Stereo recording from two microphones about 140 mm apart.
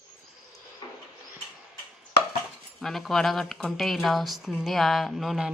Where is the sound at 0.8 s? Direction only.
30° left (ahead or behind).